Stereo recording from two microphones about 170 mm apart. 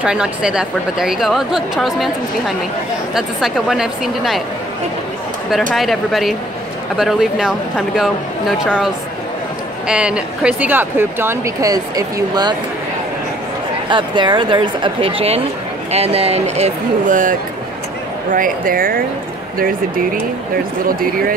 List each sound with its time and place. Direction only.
0.0 s a woman's voice: 5° right (ahead or behind)
3.2 s a woman's voice: centre (ahead or behind)
5.7 s a woman's voice: centre (ahead or behind); by 12.5 s 25° right (ahead or behind)
13.8 s speech: 25° right (ahead or behind); by 19.0 s 55° right (ahead or behind)
20.8 s speech: 55° right (ahead or behind)